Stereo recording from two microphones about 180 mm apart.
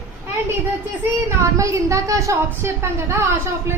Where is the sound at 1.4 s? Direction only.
15° right (ahead or behind).